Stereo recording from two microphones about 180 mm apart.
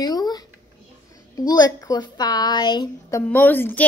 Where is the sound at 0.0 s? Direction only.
20° left (ahead or behind).